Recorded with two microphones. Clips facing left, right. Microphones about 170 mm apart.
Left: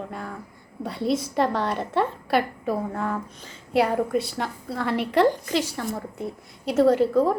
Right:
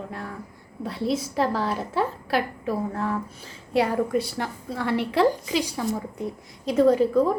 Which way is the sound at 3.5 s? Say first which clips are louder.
Left 1 dB; 75° left (ahead or behind).